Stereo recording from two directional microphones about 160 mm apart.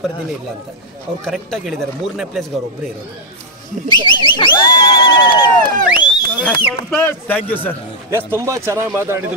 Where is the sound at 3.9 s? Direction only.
30° left (ahead or behind).